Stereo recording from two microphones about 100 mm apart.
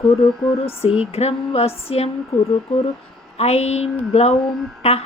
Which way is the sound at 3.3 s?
90° left.